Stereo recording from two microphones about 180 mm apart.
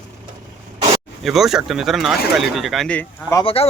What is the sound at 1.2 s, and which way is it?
Speech, centre (ahead or behind).